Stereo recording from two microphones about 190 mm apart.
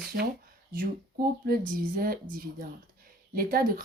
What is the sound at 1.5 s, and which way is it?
Speech, 50° right (ahead or behind).